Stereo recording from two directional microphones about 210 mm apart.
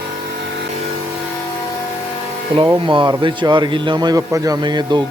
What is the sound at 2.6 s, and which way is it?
Speech, 25° right (ahead or behind).